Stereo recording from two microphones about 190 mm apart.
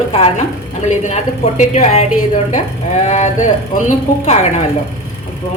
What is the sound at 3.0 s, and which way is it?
A woman's voice, 40° left (ahead or behind).